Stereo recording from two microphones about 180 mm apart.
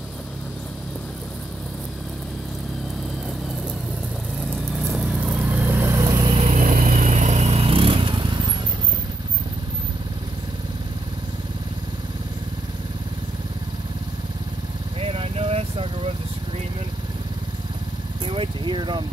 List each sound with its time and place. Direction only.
4.7 s vehicle: 5° right (ahead or behind); by 8.5 s 25° right (ahead or behind)
15.0 s vehicle: 30° right (ahead or behind)
18.2 s vehicle: 30° right (ahead or behind)